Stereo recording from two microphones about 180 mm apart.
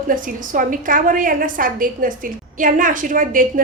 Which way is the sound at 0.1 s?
50° right (ahead or behind).